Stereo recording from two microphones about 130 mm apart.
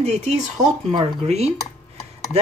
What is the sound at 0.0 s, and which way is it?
Speech, 55° right (ahead or behind).